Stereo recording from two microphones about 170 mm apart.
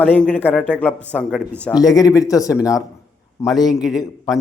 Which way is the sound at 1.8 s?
20° left (ahead or behind).